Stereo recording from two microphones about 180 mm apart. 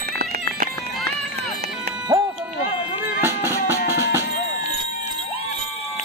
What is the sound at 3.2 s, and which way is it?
Music, 15° right (ahead or behind).